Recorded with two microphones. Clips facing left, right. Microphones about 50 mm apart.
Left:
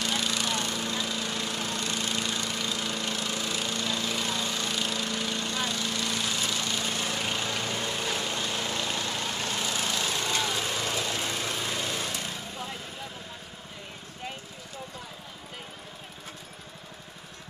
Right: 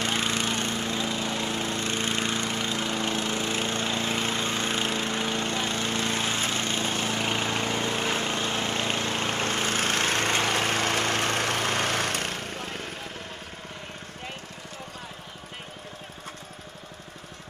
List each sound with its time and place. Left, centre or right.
0.0 s lawn mower: right